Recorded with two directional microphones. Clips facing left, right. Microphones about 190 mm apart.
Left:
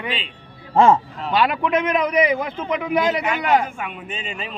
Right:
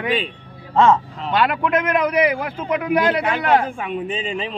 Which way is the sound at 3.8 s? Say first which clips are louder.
Right 7 dB; 30° right (ahead or behind).